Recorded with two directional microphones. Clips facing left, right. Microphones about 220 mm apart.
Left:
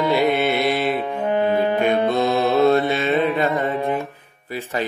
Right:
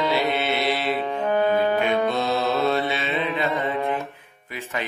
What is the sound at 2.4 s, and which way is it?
Mantra, 15° left (ahead or behind).